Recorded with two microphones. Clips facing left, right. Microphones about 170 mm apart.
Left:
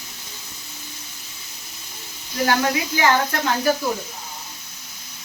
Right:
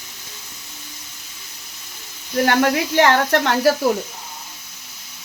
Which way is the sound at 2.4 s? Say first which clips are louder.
Right 3 dB; 60° right (ahead or behind).